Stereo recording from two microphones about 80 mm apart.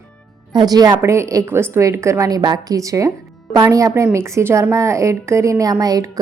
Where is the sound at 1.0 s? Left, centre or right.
Right.